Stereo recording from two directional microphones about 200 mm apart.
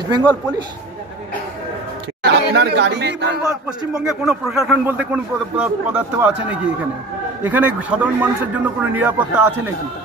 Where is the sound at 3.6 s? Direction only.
5° right (ahead or behind).